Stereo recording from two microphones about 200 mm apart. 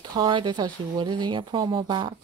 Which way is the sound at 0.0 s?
20° right (ahead or behind).